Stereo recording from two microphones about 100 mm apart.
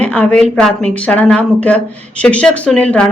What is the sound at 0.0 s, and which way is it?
A woman's voice, 15° left (ahead or behind).